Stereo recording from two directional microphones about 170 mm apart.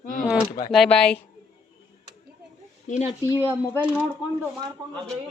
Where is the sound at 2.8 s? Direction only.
45° left (ahead or behind).